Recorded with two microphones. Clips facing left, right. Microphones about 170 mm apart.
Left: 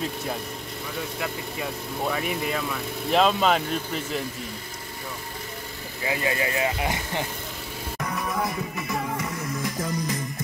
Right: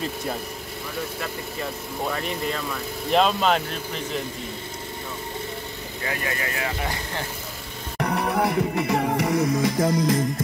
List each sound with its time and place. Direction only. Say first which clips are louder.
2.0 s speech: even; 5° left (ahead or behind)
6.0 s speech: left 3 dB; 20° left (ahead or behind)
8.0 s music: right 6 dB; 70° right (ahead or behind); by 10.2 s 90° right